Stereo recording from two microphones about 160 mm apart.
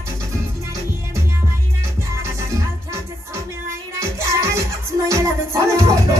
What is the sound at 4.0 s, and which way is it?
Music, 20° right (ahead or behind).